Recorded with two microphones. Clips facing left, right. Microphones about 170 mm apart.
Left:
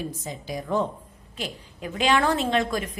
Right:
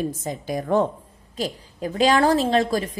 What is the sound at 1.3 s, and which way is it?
A woman's voice, 40° right (ahead or behind).